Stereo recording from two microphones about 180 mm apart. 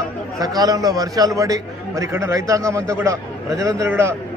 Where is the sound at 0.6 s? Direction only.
20° right (ahead or behind).